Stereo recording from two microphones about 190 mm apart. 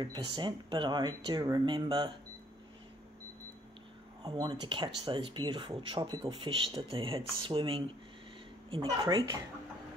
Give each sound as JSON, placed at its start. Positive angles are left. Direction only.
{"t": 0.0, "sound": "speech", "side_deg": -25}
{"t": 4.2, "sound": "speech", "side_deg": -25}